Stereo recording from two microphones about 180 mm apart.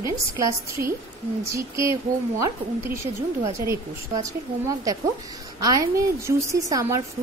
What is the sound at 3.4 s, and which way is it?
A woman's voice, 15° right (ahead or behind).